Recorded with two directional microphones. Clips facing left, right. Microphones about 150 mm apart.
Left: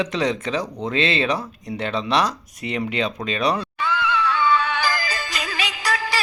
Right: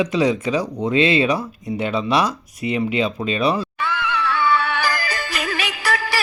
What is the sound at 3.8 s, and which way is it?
Music, 15° left (ahead or behind).